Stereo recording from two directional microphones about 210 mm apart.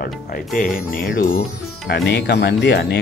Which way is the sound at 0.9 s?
40° left (ahead or behind).